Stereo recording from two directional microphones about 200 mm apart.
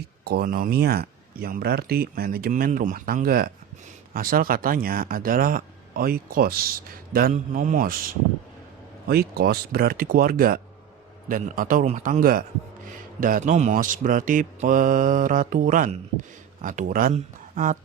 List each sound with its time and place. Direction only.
0.3 s speech: 50° right (ahead or behind)